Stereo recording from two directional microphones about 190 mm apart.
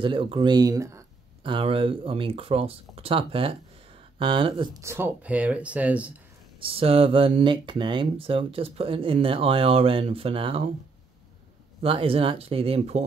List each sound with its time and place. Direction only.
0.0 s speech: 25° right (ahead or behind)
4.8 s speech: 10° right (ahead or behind)
6.6 s speech: 30° right (ahead or behind)
11.8 s speech: 30° right (ahead or behind)